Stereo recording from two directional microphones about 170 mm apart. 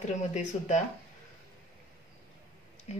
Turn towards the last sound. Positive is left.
turn(degrees=40)  # may be behind; listen again after turning